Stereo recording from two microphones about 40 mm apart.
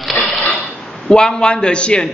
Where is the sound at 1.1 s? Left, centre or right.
Centre.